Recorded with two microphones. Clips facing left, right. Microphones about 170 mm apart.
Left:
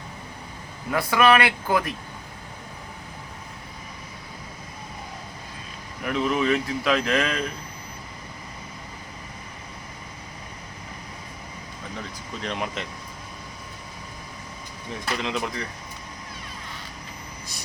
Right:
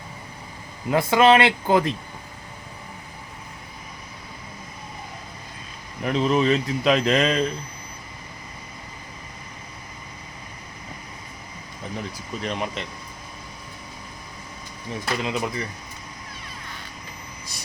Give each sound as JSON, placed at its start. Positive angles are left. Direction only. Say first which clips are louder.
{"t": 0.9, "sound": "speech", "louder": "right 3 dB", "side_deg": -25}
{"t": 6.0, "sound": "speech", "louder": "right 3 dB", "side_deg": -25}
{"t": 12.4, "sound": "speech", "louder": "right 1 dB", "side_deg": 0}
{"t": 15.2, "sound": "speech", "louder": "right 1 dB", "side_deg": -5}